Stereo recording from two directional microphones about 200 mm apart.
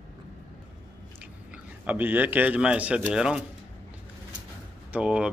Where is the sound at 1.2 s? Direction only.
10° right (ahead or behind).